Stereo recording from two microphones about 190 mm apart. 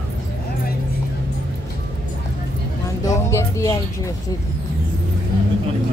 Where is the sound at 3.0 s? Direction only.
15° left (ahead or behind).